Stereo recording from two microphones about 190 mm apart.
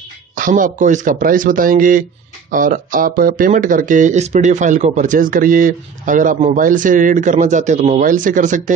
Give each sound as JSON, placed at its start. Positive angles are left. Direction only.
{"t": 0.4, "sound": "speech", "side_deg": -45}